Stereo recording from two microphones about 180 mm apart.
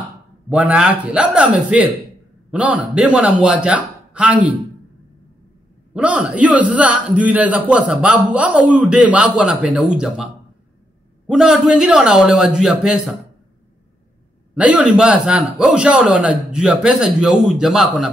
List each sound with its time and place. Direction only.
0.5 s a man's voice: 5° right (ahead or behind)
5.9 s a man's voice: 5° right (ahead or behind)
14.5 s a man's voice: 5° right (ahead or behind)